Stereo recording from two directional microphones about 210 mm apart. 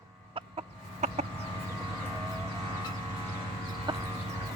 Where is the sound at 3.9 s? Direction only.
25° right (ahead or behind).